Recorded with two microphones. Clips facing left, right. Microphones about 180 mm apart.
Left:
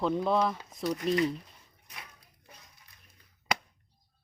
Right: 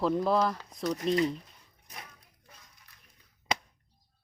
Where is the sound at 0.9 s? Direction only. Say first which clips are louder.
Right 1 dB; 35° right (ahead or behind).